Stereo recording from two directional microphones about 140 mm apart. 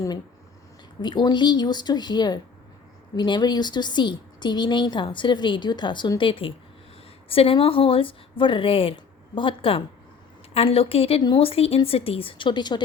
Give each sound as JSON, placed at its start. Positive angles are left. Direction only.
{"t": 1.0, "sound": "a woman's voice", "side_deg": 30}